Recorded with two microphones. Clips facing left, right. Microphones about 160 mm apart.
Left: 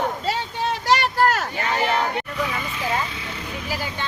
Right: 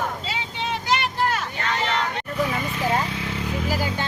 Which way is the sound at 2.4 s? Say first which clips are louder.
Right 2 dB; 50° right (ahead or behind).